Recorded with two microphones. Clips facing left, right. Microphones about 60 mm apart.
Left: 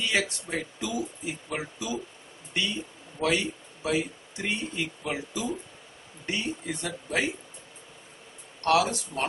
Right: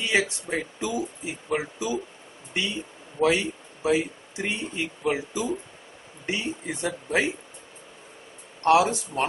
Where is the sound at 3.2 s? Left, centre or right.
Centre.